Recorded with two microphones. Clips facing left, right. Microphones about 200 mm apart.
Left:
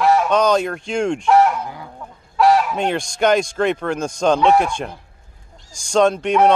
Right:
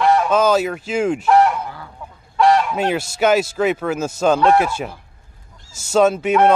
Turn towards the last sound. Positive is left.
turn(degrees=-5)  # may be behind; listen again after turning